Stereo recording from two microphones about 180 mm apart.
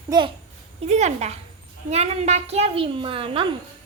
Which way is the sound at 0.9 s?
40° right (ahead or behind).